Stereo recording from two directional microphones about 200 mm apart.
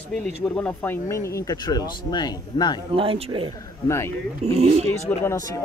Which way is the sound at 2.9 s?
25° right (ahead or behind).